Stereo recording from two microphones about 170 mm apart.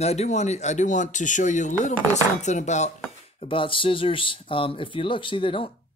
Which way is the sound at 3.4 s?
30° left (ahead or behind).